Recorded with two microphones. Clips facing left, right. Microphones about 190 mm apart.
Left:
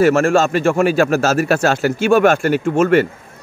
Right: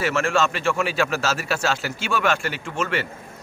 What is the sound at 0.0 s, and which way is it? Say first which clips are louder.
A man's voice: left 9 dB; 45° left (ahead or behind).